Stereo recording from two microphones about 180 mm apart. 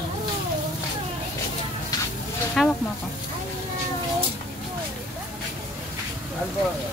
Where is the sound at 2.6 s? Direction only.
Centre (ahead or behind).